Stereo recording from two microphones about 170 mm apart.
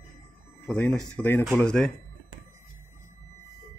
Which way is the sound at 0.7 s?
10° left (ahead or behind).